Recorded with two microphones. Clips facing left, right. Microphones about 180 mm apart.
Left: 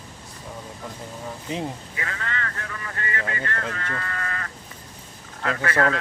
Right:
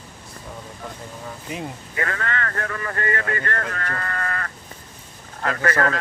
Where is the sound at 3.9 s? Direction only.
50° right (ahead or behind).